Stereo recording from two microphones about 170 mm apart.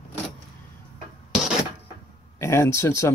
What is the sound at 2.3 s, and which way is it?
Speech, 15° left (ahead or behind).